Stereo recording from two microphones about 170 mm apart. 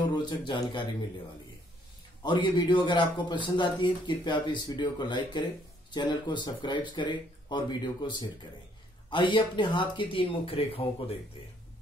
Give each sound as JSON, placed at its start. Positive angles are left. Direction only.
{"t": 0.1, "sound": "a man's voice", "side_deg": 25}
{"t": 2.2, "sound": "a man's voice", "side_deg": 25}